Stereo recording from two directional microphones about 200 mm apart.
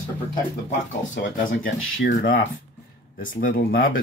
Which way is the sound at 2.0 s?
45° left (ahead or behind).